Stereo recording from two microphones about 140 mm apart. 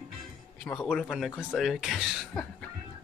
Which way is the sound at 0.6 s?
5° left (ahead or behind).